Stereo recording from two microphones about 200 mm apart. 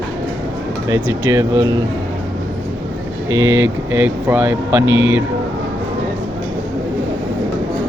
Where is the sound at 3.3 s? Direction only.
75° right (ahead or behind).